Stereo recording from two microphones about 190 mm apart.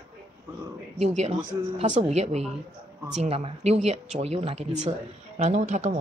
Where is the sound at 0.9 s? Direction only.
35° right (ahead or behind).